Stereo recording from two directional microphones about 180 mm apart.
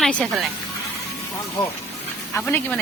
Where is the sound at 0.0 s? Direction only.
5° left (ahead or behind).